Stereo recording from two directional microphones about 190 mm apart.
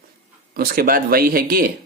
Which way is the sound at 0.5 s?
50° right (ahead or behind).